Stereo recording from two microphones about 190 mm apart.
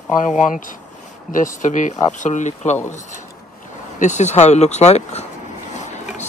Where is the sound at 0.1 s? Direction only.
40° left (ahead or behind).